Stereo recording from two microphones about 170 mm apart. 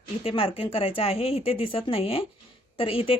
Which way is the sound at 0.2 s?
35° left (ahead or behind).